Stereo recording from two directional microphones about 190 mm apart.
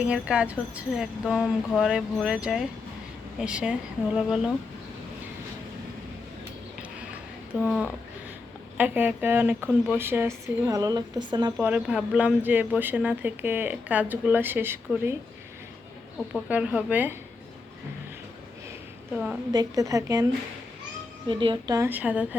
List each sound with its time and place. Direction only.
0.0 s speech: 5° right (ahead or behind)
7.6 s speech: 5° right (ahead or behind); by 11.5 s 20° right (ahead or behind)
11.6 s speech: 5° right (ahead or behind)
16.3 s speech: 5° right (ahead or behind)
19.1 s speech: 5° right (ahead or behind)
19.5 s speech: 15° right (ahead or behind)
21.2 s speech: 25° right (ahead or behind); by 22.4 s 5° right (ahead or behind)